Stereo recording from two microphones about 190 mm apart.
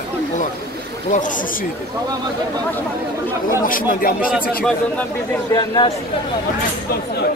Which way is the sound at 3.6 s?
50° left (ahead or behind).